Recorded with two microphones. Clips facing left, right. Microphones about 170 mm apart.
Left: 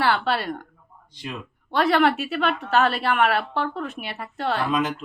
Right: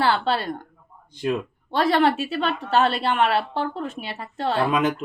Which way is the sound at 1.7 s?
30° right (ahead or behind).